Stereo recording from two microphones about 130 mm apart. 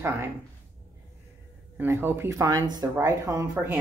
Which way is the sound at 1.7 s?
15° right (ahead or behind).